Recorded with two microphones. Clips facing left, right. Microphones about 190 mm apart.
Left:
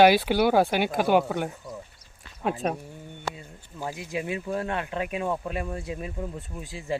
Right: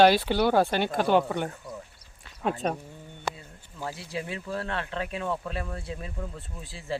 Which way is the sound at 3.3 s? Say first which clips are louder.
Even; 20° right (ahead or behind).